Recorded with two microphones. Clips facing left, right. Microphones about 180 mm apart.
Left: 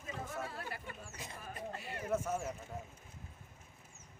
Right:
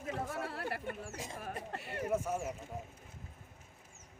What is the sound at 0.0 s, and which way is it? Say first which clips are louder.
Chatter: right 4 dB; 65° right (ahead or behind).